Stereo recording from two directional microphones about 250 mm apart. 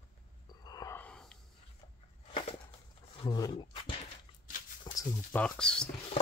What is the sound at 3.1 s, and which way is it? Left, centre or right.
Roaring cats, centre.